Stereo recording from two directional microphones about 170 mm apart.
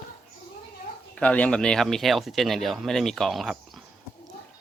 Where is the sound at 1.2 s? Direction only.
10° left (ahead or behind).